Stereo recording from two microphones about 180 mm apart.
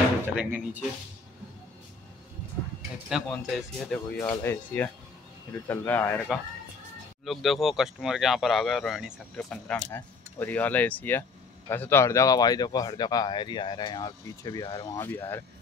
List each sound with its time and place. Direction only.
0.4 s speech: 10° right (ahead or behind)
3.1 s speech: centre (ahead or behind)